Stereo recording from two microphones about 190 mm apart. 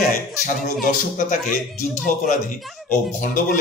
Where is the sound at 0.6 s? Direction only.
45° left (ahead or behind).